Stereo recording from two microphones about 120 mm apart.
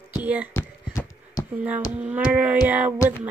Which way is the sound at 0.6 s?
25° left (ahead or behind).